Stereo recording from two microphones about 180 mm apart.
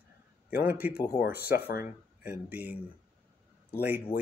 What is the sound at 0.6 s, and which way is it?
Speech, 10° right (ahead or behind).